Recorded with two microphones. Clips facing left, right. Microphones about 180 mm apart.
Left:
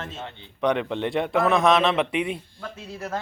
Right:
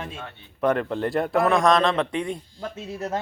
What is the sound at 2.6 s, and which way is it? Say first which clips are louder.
Speech: right 4 dB; 20° right (ahead or behind).